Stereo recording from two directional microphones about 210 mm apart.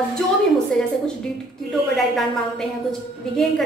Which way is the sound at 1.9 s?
Centre (ahead or behind).